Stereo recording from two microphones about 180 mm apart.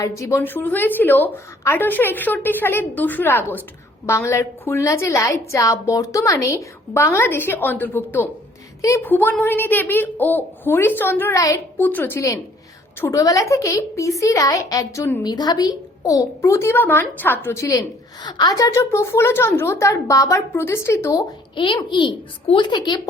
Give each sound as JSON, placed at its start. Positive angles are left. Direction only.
{"t": 0.0, "sound": "a woman's voice", "side_deg": 15}